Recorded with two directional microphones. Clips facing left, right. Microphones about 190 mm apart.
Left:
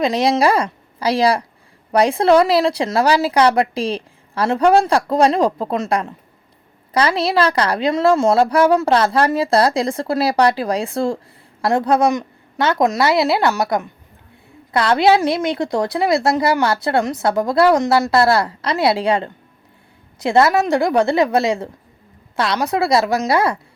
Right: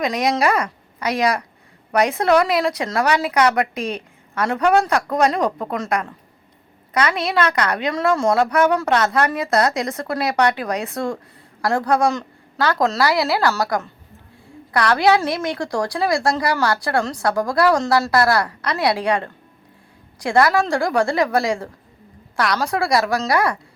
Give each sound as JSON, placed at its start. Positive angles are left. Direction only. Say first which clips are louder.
{"t": 0.0, "sound": "a woman's voice", "louder": "left 4 dB", "side_deg": 30}